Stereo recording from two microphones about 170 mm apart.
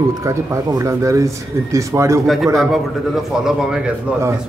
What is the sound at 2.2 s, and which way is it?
A man's voice, centre (ahead or behind).